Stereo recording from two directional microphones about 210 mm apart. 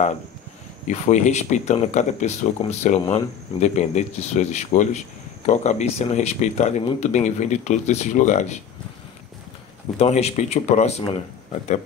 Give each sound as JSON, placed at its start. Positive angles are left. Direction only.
{"t": 0.8, "sound": "speech", "side_deg": 35}
{"t": 9.9, "sound": "speech", "side_deg": 30}